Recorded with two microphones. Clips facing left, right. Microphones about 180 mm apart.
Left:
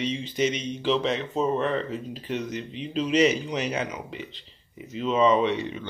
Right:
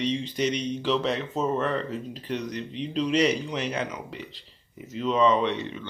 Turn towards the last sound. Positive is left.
turn(degrees=10)  # may be behind; listen again after turning